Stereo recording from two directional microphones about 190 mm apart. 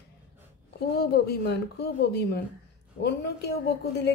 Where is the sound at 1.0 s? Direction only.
55° left (ahead or behind).